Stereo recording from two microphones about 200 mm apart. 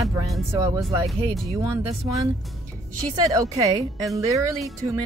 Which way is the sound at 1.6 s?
15° right (ahead or behind).